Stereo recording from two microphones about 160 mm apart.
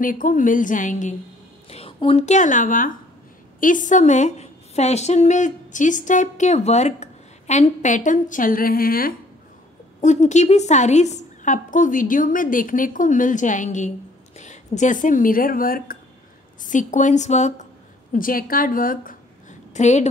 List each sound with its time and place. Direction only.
0.0 s a woman's voice: 55° left (ahead or behind)
1.7 s a woman's voice: 40° left (ahead or behind); by 9.1 s 65° left (ahead or behind)
10.0 s a woman's voice: 45° left (ahead or behind); by 16.0 s 65° left (ahead or behind)
16.6 s a woman's voice: 50° left (ahead or behind)
18.1 s a woman's voice: 60° left (ahead or behind)
19.7 s a woman's voice: 45° left (ahead or behind)